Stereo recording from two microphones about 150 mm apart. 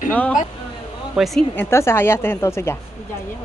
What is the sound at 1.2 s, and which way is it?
Speech, 5° right (ahead or behind).